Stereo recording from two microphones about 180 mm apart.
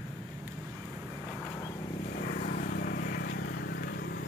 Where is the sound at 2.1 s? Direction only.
50° left (ahead or behind).